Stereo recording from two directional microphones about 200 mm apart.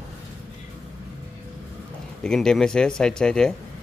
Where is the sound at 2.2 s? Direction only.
5° left (ahead or behind).